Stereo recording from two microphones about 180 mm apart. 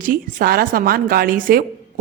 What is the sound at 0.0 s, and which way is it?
A woman's voice, 50° right (ahead or behind).